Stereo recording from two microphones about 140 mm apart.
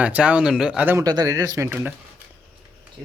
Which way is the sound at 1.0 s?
25° right (ahead or behind).